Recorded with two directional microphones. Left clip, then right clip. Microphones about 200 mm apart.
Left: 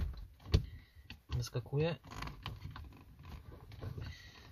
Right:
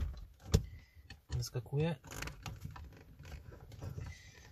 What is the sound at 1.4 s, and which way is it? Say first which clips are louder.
Speech: left 2 dB; 20° left (ahead or behind).